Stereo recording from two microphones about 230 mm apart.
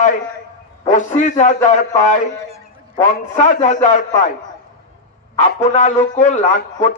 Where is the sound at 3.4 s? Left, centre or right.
Left.